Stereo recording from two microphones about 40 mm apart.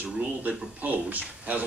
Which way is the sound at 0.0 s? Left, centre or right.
Right.